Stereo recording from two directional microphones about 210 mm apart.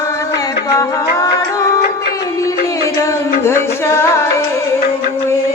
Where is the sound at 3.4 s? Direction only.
10° left (ahead or behind).